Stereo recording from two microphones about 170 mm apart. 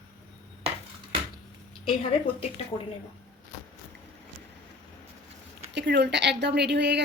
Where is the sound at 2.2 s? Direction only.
30° left (ahead or behind).